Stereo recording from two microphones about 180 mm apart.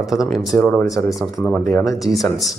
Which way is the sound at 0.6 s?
15° left (ahead or behind).